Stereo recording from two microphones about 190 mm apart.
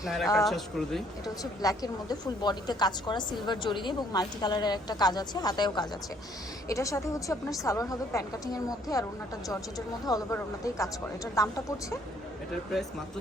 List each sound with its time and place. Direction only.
0.0 s speech: centre (ahead or behind)
1.6 s a woman's voice: 20° left (ahead or behind)
10.1 s a woman's voice: 20° left (ahead or behind)